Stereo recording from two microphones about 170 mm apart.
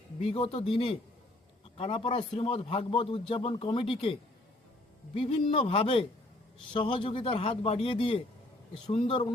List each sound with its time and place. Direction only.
0.2 s a man's voice: 30° left (ahead or behind)
5.1 s a man's voice: 30° left (ahead or behind)